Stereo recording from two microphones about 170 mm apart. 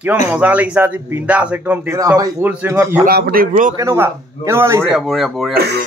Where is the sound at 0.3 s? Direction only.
10° right (ahead or behind).